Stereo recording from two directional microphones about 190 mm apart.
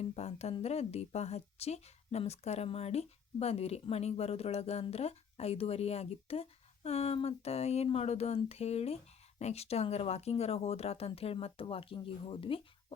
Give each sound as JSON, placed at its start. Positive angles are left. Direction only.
{"t": 0.0, "sound": "a woman's voice", "side_deg": 35}